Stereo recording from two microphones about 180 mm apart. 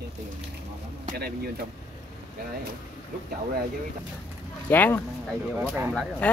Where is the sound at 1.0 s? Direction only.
60° right (ahead or behind).